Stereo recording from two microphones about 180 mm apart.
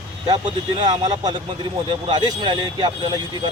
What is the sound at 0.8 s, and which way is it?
Speech, 20° right (ahead or behind).